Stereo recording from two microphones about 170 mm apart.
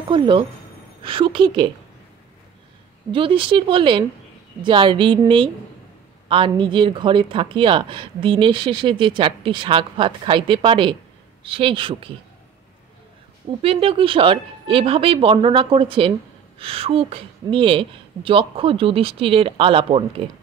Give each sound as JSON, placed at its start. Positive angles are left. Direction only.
{"t": 0.1, "sound": "a woman's voice", "side_deg": -30}
{"t": 3.1, "sound": "a woman's voice", "side_deg": -30}
{"t": 13.6, "sound": "a woman's voice", "side_deg": -35}